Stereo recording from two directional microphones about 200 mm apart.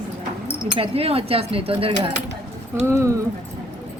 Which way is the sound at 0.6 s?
25° right (ahead or behind).